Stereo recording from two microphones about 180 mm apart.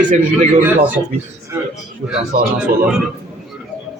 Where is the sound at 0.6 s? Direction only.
10° right (ahead or behind).